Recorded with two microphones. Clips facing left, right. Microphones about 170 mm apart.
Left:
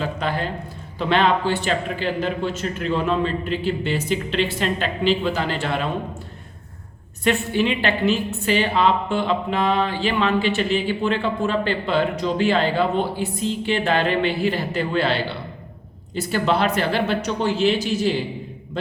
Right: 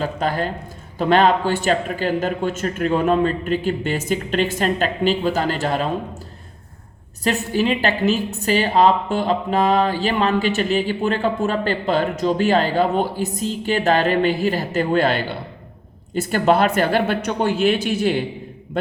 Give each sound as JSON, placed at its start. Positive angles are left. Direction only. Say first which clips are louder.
{"t": 0.0, "sound": "a woman's voice", "louder": "right 3 dB", "side_deg": -45}
{"t": 7.3, "sound": "a woman's voice", "louder": "right 1 dB", "side_deg": -40}